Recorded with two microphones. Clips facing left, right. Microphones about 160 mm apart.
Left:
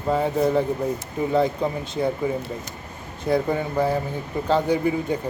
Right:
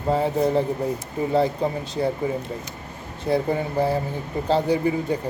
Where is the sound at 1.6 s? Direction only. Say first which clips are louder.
Even; 35° right (ahead or behind).